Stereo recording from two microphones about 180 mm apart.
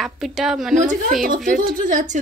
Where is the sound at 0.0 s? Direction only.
Centre (ahead or behind).